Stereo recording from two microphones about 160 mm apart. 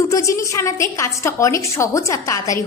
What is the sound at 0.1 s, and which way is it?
A woman's voice, 20° left (ahead or behind).